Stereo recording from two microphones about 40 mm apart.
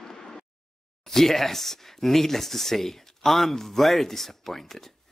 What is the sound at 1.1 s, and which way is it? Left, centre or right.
Speech, centre.